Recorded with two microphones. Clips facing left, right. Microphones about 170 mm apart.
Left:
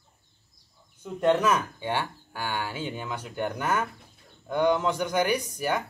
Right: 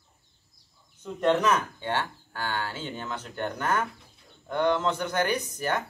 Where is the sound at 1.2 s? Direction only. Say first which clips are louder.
Left 1 dB; 10° left (ahead or behind).